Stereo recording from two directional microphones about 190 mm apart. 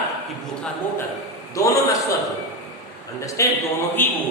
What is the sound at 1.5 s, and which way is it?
Speech, 15° left (ahead or behind).